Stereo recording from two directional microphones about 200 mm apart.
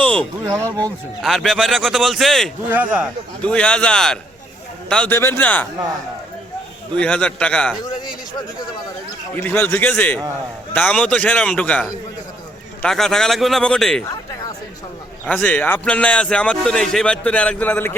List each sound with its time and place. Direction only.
0.0 s a sound: 5° left (ahead or behind)
0.4 s speech: 15° right (ahead or behind)
1.2 s a man's voice: centre (ahead or behind)
3.4 s a man's voice: 5° left (ahead or behind)
6.9 s a man's voice: 5° left (ahead or behind)
9.3 s a man's voice: 10° left (ahead or behind)
15.3 s a man's voice: 5° left (ahead or behind)